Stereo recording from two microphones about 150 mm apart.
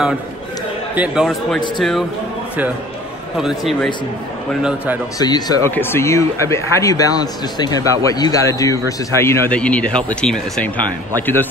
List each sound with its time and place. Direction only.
0.9 s a man's voice: 5° right (ahead or behind)
3.3 s a man's voice: centre (ahead or behind)
5.2 s speech: 25° left (ahead or behind)
5.8 s speech: 15° left (ahead or behind)